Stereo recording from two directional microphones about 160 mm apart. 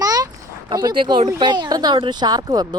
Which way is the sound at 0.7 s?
25° right (ahead or behind).